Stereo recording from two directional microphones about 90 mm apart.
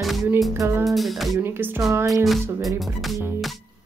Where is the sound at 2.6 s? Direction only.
Centre (ahead or behind).